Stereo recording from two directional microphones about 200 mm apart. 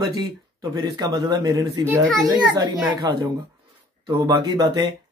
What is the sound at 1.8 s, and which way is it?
Speech, 5° left (ahead or behind).